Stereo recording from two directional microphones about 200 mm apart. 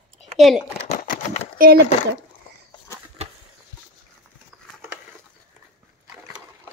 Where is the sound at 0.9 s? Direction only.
40° left (ahead or behind).